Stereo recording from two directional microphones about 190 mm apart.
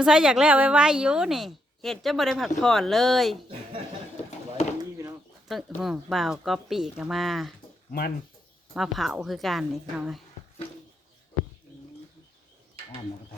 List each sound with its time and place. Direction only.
0.0 s a woman's voice: 5° right (ahead or behind)
4.8 s bird: 15° right (ahead or behind)
5.5 s a woman's voice: centre (ahead or behind)
7.9 s speech: 50° left (ahead or behind)
8.7 s a woman's voice: centre (ahead or behind)